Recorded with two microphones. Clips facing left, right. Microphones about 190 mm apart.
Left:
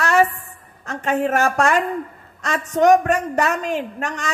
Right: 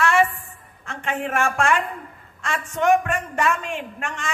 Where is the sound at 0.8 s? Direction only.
40° left (ahead or behind).